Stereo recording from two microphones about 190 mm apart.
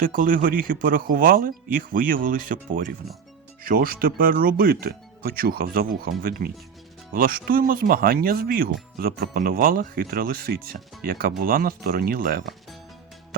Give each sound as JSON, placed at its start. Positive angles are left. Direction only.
{"t": 0.0, "sound": "speech", "side_deg": -45}